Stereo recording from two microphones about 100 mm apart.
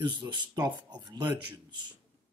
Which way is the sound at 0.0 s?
50° right (ahead or behind).